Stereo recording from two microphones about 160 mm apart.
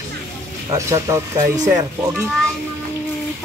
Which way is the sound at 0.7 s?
20° right (ahead or behind).